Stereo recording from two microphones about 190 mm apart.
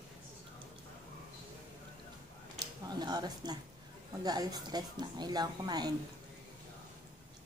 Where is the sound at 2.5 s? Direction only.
20° right (ahead or behind).